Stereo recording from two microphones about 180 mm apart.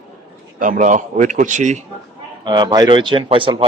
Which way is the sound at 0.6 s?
45° right (ahead or behind).